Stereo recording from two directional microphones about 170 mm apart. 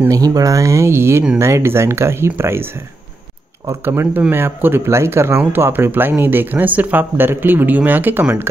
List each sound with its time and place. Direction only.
0.0 s speech: 20° right (ahead or behind)
3.6 s speech: 15° right (ahead or behind)